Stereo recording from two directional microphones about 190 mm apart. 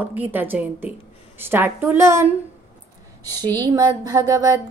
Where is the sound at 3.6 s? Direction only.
20° right (ahead or behind).